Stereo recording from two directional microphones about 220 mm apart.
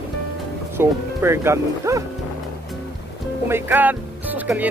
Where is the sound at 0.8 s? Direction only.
10° right (ahead or behind).